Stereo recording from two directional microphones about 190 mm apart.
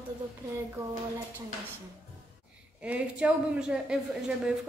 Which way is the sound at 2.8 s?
5° right (ahead or behind).